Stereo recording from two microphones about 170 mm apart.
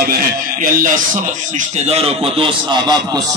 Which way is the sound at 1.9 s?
35° right (ahead or behind).